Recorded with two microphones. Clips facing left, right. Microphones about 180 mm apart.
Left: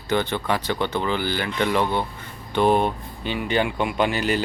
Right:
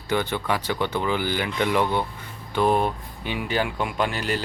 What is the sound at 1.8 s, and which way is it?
Speech, 15° left (ahead or behind).